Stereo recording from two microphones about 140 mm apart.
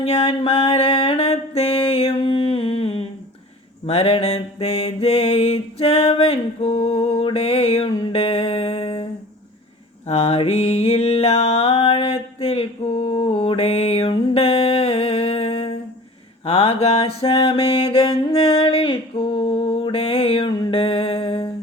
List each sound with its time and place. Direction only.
0.0 s mantra: 45° left (ahead or behind)
10.1 s music: 45° left (ahead or behind)
16.5 s mantra: 45° left (ahead or behind)